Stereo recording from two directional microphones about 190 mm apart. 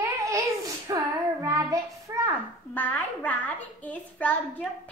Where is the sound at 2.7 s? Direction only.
10° left (ahead or behind).